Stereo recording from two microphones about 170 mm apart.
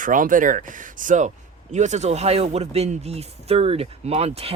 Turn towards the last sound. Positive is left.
turn(degrees=-35)  # may be behind; listen again after turning